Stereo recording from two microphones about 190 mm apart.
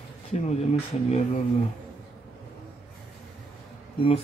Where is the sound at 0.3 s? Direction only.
35° left (ahead or behind).